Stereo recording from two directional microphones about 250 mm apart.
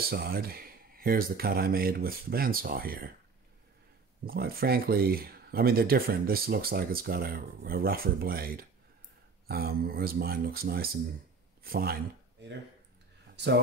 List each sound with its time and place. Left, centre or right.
0.1 s speech: right
4.3 s speech: right